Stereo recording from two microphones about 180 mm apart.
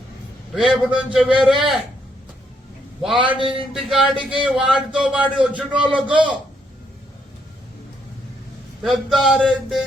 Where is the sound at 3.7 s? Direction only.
Centre (ahead or behind).